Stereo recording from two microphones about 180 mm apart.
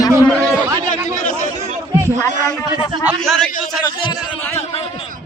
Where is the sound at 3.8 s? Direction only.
20° left (ahead or behind).